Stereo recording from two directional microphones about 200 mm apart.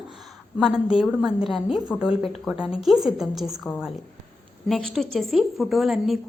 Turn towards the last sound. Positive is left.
turn(degrees=0)  # may be behind; listen again after turning